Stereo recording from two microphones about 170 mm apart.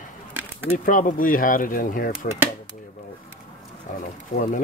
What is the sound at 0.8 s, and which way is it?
Speech, 50° left (ahead or behind).